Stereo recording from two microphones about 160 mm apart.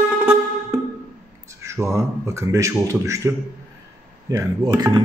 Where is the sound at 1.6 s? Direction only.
15° right (ahead or behind).